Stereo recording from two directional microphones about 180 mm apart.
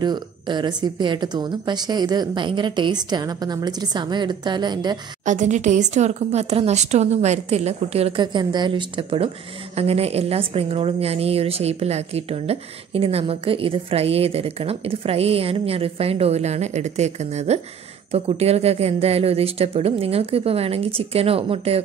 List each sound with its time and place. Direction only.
0.0 s speech: 25° right (ahead or behind)
5.2 s a woman's voice: 45° right (ahead or behind)